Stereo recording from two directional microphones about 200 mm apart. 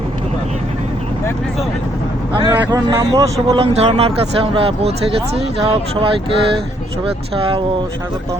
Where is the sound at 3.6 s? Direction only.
30° right (ahead or behind).